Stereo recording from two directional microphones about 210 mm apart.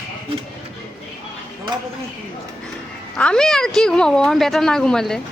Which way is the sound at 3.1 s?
5° left (ahead or behind).